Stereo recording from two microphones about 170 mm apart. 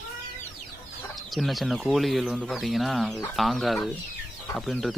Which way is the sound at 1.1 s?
Centre (ahead or behind).